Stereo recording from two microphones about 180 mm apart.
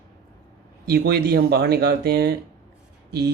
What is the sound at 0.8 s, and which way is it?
Speech, 65° right (ahead or behind).